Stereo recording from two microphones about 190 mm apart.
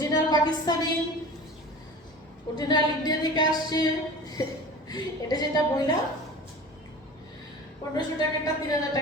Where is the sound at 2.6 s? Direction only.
20° left (ahead or behind).